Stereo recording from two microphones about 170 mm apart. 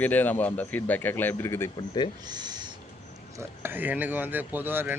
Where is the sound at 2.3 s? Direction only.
25° right (ahead or behind).